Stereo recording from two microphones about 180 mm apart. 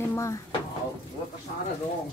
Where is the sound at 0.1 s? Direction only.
15° left (ahead or behind).